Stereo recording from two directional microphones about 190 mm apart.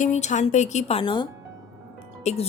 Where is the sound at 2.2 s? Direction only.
35° left (ahead or behind).